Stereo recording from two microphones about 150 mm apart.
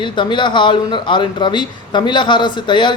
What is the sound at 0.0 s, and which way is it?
Speech, 30° left (ahead or behind).